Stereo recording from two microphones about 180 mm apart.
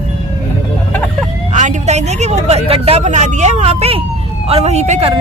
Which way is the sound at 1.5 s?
40° right (ahead or behind).